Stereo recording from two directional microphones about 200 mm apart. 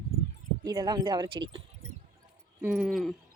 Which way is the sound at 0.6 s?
20° right (ahead or behind).